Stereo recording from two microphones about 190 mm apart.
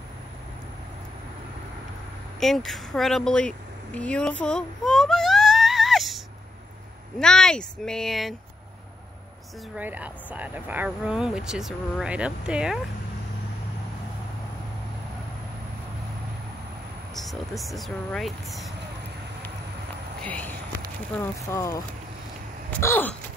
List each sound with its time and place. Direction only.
2.4 s a sound: centre (ahead or behind)
7.2 s speech: 5° left (ahead or behind)
9.8 s speech: 10° right (ahead or behind)
17.1 s speech: centre (ahead or behind)
20.2 s a sound: 10° left (ahead or behind)
21.2 s speech: 15° left (ahead or behind)